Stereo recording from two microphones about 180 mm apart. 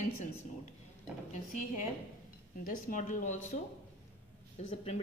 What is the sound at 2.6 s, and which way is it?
Speech, 50° left (ahead or behind).